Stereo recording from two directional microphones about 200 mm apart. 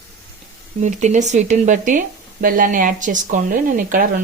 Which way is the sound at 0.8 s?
35° right (ahead or behind).